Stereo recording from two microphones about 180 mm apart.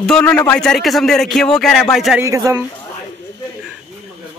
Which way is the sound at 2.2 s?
20° right (ahead or behind).